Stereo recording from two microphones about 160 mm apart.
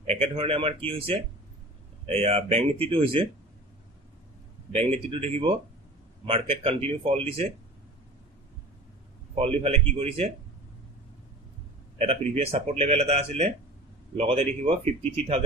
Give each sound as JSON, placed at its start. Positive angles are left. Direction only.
{"t": 0.0, "sound": "speech", "side_deg": -40}
{"t": 4.7, "sound": "speech", "side_deg": -40}
{"t": 9.3, "sound": "speech", "side_deg": -40}
{"t": 12.0, "sound": "speech", "side_deg": -40}